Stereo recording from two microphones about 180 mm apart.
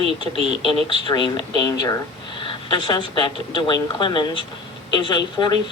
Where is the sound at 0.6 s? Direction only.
25° left (ahead or behind).